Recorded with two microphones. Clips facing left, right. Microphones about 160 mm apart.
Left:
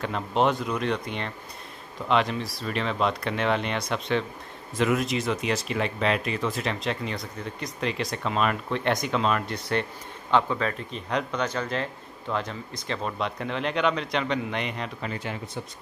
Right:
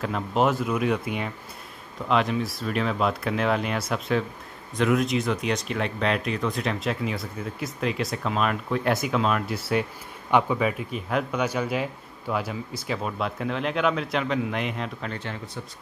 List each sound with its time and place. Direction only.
0.0 s speech: 5° right (ahead or behind); by 15.6 s 15° left (ahead or behind)